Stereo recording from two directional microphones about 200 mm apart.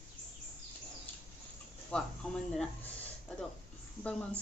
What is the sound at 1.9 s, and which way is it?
Speech, 5° left (ahead or behind).